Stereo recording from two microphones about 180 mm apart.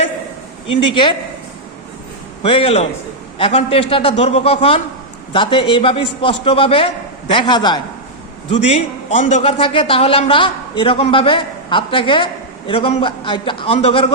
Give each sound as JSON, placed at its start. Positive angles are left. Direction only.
{"t": 0.8, "sound": "a man's voice", "side_deg": 25}
{"t": 2.4, "sound": "a man's voice", "side_deg": 30}
{"t": 8.4, "sound": "a man's voice", "side_deg": 35}